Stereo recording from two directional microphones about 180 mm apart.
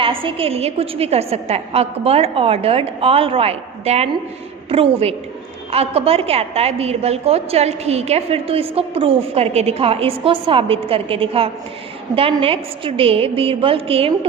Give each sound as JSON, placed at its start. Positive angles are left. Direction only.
{"t": 0.0, "sound": "a woman's voice", "side_deg": -30}